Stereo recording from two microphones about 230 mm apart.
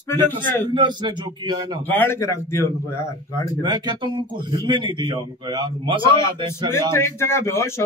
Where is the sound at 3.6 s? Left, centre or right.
Centre.